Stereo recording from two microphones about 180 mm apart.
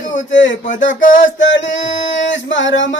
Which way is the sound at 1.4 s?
90° left.